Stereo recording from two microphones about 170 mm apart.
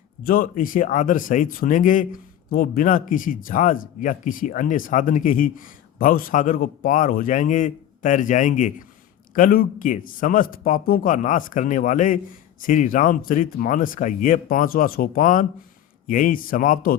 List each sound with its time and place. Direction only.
0.2 s a man's voice: 60° left (ahead or behind)